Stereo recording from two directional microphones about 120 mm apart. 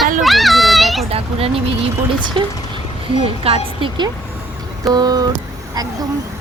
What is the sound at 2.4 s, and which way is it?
Speech, 45° right (ahead or behind).